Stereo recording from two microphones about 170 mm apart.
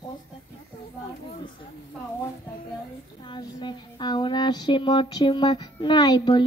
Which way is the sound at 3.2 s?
25° left (ahead or behind).